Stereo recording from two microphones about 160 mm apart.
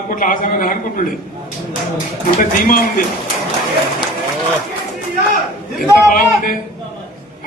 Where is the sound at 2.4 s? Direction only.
60° left (ahead or behind).